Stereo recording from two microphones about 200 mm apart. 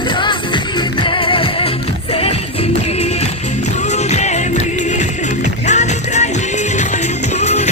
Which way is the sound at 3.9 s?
35° left (ahead or behind).